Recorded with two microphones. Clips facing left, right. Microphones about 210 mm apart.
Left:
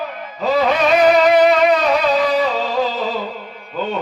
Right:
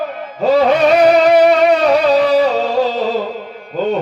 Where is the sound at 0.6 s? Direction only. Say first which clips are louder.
Right 2 dB; 30° right (ahead or behind).